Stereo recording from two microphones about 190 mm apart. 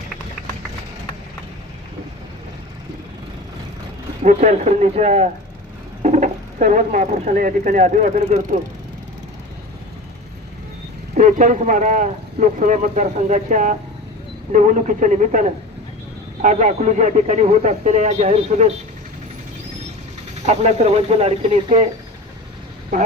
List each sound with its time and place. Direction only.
4.2 s a man's voice: 40° right (ahead or behind)
11.1 s a man's voice: 40° right (ahead or behind)
20.5 s a man's voice: 35° right (ahead or behind)